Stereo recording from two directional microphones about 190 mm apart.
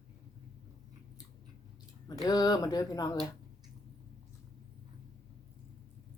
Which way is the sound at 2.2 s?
20° left (ahead or behind).